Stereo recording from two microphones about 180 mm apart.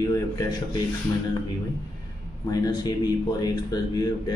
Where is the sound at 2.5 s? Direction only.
20° left (ahead or behind).